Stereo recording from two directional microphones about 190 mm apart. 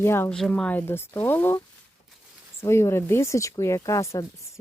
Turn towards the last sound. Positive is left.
turn(degrees=15)  # may be behind; listen again after turning